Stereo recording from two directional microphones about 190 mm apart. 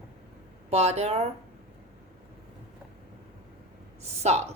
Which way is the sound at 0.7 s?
35° right (ahead or behind).